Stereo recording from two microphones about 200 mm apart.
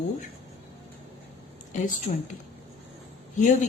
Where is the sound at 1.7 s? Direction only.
35° left (ahead or behind).